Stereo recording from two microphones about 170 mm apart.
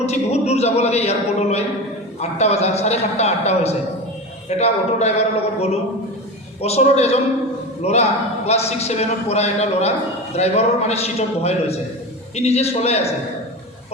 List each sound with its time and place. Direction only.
0.0 s a man's voice: 40° left (ahead or behind)